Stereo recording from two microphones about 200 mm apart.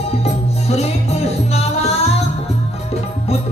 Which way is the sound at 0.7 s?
30° left (ahead or behind).